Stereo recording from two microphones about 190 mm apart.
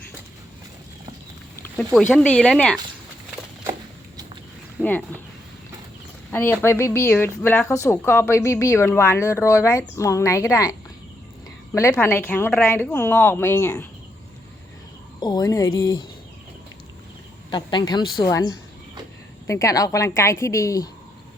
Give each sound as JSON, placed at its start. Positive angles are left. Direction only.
{"t": 1.6, "sound": "speech", "side_deg": 5}
{"t": 4.8, "sound": "speech", "side_deg": 10}
{"t": 6.3, "sound": "speech", "side_deg": 10}
{"t": 15.2, "sound": "a woman's voice", "side_deg": 20}
{"t": 17.5, "sound": "a woman's voice", "side_deg": 25}